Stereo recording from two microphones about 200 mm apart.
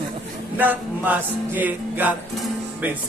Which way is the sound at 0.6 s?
10° right (ahead or behind).